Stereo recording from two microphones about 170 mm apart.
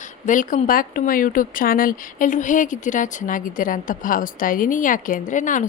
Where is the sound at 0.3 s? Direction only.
50° left (ahead or behind).